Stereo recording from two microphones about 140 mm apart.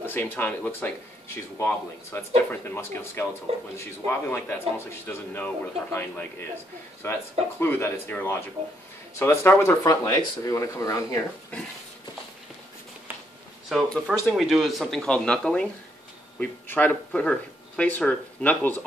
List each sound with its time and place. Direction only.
0.0 s speech: 15° left (ahead or behind)
13.7 s speech: 5° right (ahead or behind)